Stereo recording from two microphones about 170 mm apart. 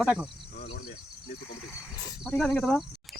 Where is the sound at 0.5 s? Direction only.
75° left (ahead or behind).